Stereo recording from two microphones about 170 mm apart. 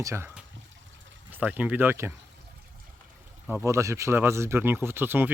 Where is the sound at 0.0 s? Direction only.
15° right (ahead or behind).